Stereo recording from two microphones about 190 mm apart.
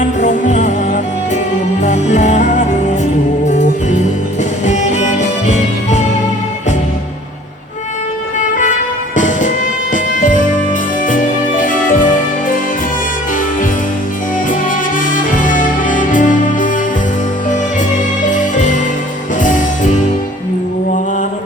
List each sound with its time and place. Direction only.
0.0 s music: 40° left (ahead or behind)
9.1 s music: 40° left (ahead or behind)
14.5 s music: 45° left (ahead or behind)
18.3 s music: 40° left (ahead or behind)